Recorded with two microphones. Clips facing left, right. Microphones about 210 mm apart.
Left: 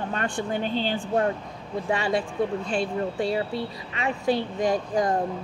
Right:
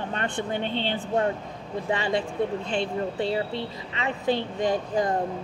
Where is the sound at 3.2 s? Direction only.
10° left (ahead or behind).